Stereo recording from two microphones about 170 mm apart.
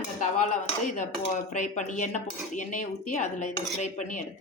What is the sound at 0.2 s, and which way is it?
Speech, 45° left (ahead or behind).